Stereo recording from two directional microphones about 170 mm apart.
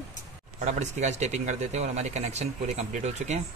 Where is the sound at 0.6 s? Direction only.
40° right (ahead or behind).